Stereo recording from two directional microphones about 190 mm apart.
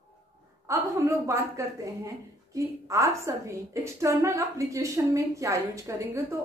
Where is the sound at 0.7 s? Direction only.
15° right (ahead or behind).